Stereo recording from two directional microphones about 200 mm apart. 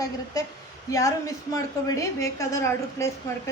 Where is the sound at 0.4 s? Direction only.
20° left (ahead or behind).